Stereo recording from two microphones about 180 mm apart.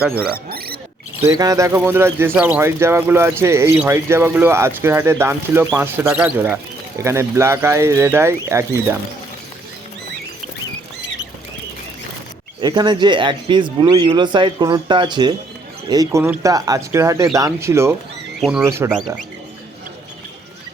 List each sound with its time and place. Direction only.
0.2 s speech: 60° right (ahead or behind)
1.2 s speech: 20° right (ahead or behind)
12.6 s speech: 25° right (ahead or behind)
18.3 s speech: centre (ahead or behind)
18.6 s speech: 15° right (ahead or behind)